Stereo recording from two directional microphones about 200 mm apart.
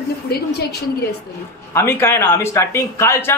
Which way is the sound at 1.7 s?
10° left (ahead or behind).